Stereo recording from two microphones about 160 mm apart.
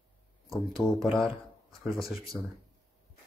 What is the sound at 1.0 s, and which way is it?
Speech, centre (ahead or behind).